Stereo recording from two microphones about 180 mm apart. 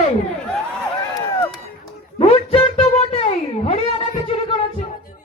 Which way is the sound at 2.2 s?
30° left (ahead or behind).